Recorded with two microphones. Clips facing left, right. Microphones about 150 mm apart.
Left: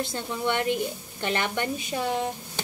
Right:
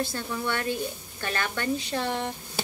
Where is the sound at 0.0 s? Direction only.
20° left (ahead or behind).